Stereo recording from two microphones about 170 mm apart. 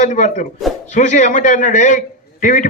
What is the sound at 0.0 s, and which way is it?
A man's voice, 45° left (ahead or behind).